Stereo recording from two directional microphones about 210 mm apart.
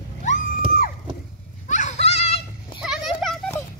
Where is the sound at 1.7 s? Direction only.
35° left (ahead or behind).